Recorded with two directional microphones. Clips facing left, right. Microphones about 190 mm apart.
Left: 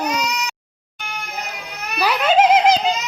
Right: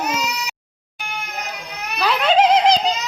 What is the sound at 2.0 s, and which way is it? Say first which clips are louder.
Giggle: left 1 dB; 5° left (ahead or behind).